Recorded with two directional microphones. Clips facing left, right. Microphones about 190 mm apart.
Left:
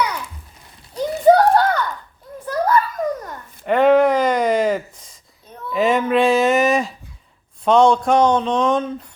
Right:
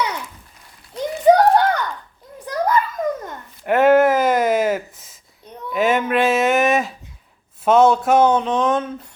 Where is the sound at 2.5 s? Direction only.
20° right (ahead or behind).